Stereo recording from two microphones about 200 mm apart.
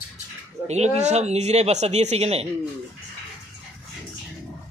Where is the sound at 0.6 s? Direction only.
35° right (ahead or behind).